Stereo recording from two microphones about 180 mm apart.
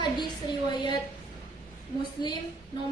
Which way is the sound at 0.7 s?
25° left (ahead or behind).